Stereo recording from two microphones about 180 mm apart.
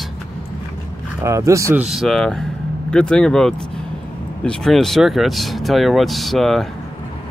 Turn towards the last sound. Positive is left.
turn(degrees=0)  # may be behind; listen again after turning